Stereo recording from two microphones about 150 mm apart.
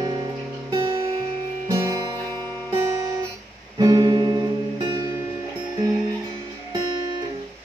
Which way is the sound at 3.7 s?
25° right (ahead or behind).